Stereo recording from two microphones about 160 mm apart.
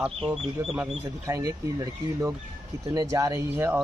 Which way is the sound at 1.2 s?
20° right (ahead or behind).